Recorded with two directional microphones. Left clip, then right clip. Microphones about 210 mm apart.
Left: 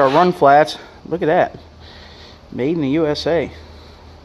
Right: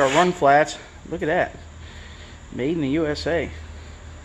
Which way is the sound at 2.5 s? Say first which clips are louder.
Left 5 dB; 30° left (ahead or behind).